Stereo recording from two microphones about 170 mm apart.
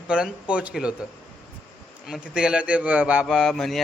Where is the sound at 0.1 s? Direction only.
5° right (ahead or behind).